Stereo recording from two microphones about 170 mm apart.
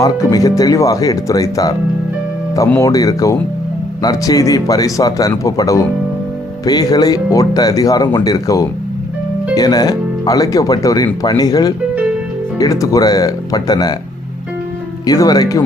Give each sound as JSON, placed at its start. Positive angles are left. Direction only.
{"t": 0.0, "sound": "speech", "side_deg": 20}
{"t": 15.0, "sound": "speech", "side_deg": 20}